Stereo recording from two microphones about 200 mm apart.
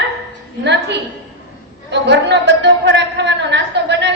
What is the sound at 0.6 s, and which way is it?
A woman's voice, 60° right (ahead or behind).